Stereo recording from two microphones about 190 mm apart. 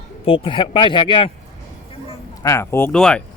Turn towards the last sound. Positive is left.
turn(degrees=5)  # may be behind; listen again after turning